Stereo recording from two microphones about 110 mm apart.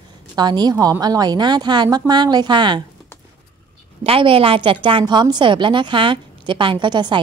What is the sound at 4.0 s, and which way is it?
A woman's voice, 55° right (ahead or behind).